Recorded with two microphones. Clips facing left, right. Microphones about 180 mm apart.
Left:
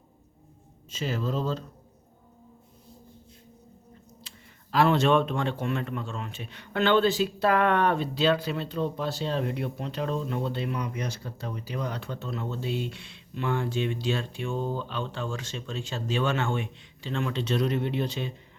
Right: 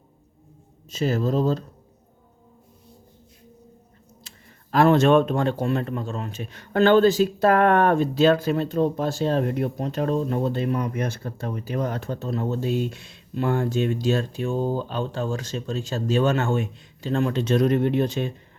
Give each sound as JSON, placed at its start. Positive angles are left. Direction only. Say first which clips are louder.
{"t": 0.9, "sound": "speech", "louder": "right 7 dB", "side_deg": -40}
{"t": 4.3, "sound": "a sound", "louder": "right 1 dB", "side_deg": -45}
{"t": 4.7, "sound": "speech", "louder": "right 5 dB", "side_deg": -50}